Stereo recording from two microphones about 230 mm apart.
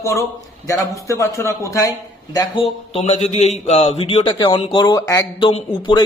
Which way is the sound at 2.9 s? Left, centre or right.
Left.